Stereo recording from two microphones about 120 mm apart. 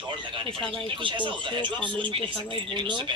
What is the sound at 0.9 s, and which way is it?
Speech, 45° right (ahead or behind).